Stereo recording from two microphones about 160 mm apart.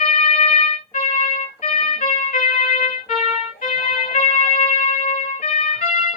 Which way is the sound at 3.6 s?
50° left (ahead or behind).